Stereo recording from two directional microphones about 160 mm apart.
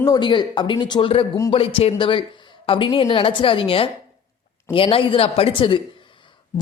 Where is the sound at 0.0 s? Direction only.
25° left (ahead or behind).